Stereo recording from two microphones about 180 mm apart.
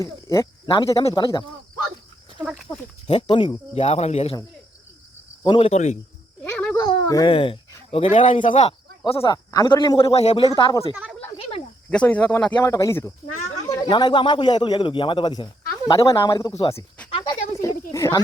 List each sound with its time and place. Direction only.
0.0 s a man's voice: 20° left (ahead or behind)
2.6 s speech: 30° left (ahead or behind)
5.4 s speech: 30° left (ahead or behind)
6.4 s a sound: 5° left (ahead or behind)
6.8 s speech: 20° left (ahead or behind)
10.4 s a man's voice: 20° left (ahead or behind)
11.9 s speech: 5° left (ahead or behind)
13.8 s a man's voice: 25° left (ahead or behind)
17.2 s a sound: 25° left (ahead or behind)